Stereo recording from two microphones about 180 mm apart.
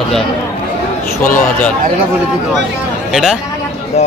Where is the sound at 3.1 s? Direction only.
5° right (ahead or behind).